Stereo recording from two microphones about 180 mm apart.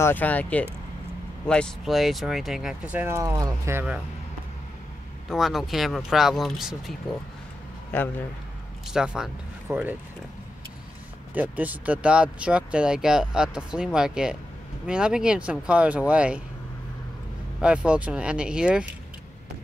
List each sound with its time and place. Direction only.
0.0 s speech: 10° left (ahead or behind); by 4.0 s 10° right (ahead or behind)
5.3 s speech: centre (ahead or behind)
7.9 s speech: 10° left (ahead or behind)
8.9 s speech: 5° right (ahead or behind)
11.3 s speech: 10° right (ahead or behind)
17.6 s speech: 5° right (ahead or behind)